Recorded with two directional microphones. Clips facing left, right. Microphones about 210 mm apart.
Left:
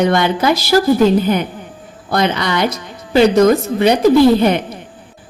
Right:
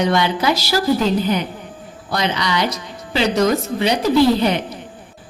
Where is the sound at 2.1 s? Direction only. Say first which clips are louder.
Left 4 dB; 50° left (ahead or behind).